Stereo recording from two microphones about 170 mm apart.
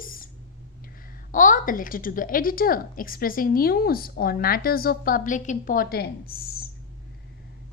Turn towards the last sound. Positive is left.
turn(degrees=65)  # may be behind; listen again after turning